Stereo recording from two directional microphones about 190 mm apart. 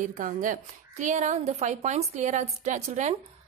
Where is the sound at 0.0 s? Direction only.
45° right (ahead or behind).